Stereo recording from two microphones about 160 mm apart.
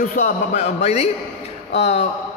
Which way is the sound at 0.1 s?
50° left (ahead or behind).